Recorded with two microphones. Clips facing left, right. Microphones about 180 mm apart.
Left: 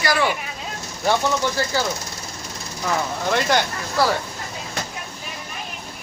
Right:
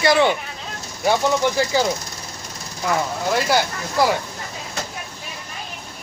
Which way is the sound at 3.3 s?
5° right (ahead or behind).